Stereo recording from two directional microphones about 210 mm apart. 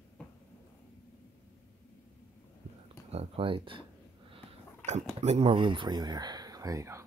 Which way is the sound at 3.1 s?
30° right (ahead or behind).